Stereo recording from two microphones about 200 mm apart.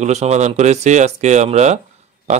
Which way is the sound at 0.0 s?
35° right (ahead or behind).